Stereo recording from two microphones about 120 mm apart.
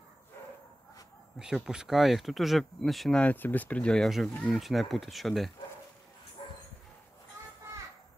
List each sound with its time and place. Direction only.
1.4 s speech: 5° right (ahead or behind)
6.4 s dog: 45° left (ahead or behind)